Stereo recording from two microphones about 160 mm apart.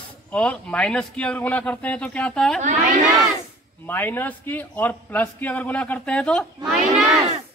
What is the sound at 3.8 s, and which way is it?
A man's voice, 15° left (ahead or behind).